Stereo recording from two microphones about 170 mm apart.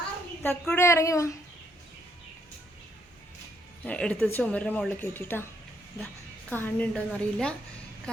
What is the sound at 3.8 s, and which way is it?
Speech, 5° left (ahead or behind).